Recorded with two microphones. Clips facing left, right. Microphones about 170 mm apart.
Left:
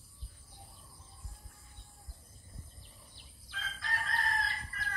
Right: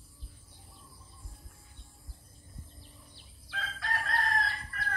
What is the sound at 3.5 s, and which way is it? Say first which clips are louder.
Chicken: right 5 dB; 65° right (ahead or behind).